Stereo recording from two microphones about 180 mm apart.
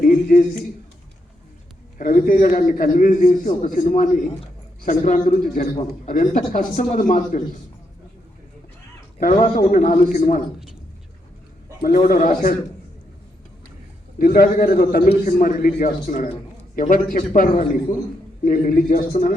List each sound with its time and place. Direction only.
0.0 s a man's voice: 50° left (ahead or behind)
2.0 s a man's voice: 50° left (ahead or behind)
9.1 s a man's voice: 45° left (ahead or behind)
11.8 s a man's voice: 50° left (ahead or behind)
14.2 s a man's voice: 55° left (ahead or behind)